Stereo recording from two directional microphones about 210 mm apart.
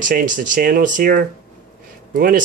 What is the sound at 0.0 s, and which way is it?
Speech, 40° right (ahead or behind).